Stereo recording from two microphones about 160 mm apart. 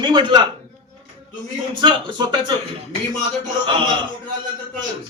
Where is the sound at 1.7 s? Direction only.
30° right (ahead or behind).